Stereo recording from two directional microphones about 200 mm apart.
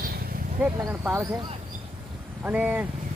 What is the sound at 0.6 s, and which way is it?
Speech, 10° right (ahead or behind).